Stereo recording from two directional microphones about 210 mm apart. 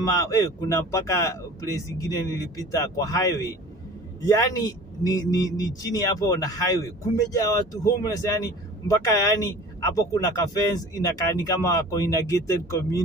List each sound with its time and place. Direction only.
0.1 s a man's voice: 15° left (ahead or behind)